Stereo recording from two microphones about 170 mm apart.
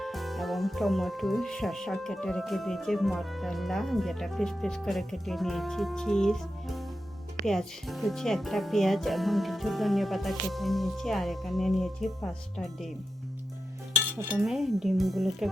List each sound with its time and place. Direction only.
0.0 s speech: centre (ahead or behind)
14.3 s speech: centre (ahead or behind)